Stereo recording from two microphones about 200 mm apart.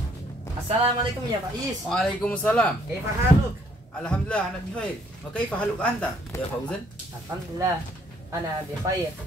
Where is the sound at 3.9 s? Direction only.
5° left (ahead or behind).